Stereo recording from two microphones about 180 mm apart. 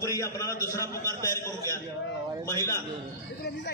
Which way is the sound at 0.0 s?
20° left (ahead or behind).